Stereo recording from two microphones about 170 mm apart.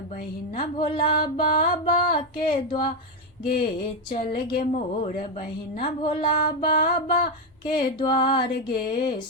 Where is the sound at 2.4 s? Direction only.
30° left (ahead or behind).